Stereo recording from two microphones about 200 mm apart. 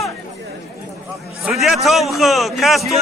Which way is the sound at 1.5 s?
Centre (ahead or behind).